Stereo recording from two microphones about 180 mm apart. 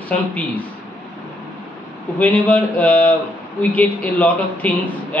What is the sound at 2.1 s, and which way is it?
A man's voice, 10° left (ahead or behind).